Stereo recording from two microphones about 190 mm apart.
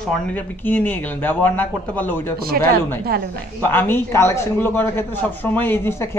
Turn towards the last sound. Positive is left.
turn(degrees=10)  # may be behind; listen again after turning